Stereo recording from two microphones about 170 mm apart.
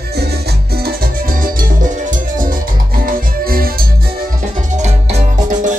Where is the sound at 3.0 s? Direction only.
60° right (ahead or behind).